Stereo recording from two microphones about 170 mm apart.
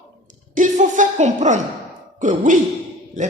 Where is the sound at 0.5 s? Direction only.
50° right (ahead or behind).